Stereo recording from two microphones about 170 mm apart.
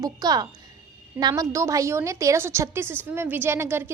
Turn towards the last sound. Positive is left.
turn(degrees=-15)  # may be behind; listen again after turning